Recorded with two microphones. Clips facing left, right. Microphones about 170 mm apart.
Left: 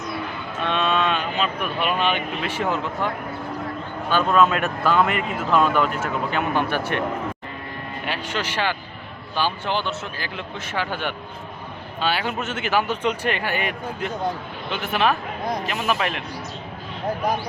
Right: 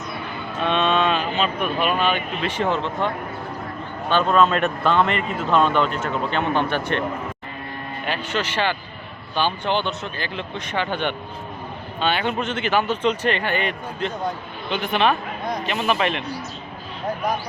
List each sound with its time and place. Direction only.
0.7 s vehicle: centre (ahead or behind)
2.0 s speech: 20° left (ahead or behind)
2.4 s speech: 10° left (ahead or behind)
4.1 s speech: 5° left (ahead or behind)
8.0 s speech: 10° left (ahead or behind)